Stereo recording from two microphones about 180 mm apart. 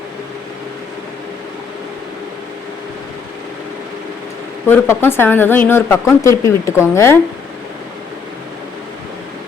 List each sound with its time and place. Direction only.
4.7 s a woman's voice: 10° left (ahead or behind)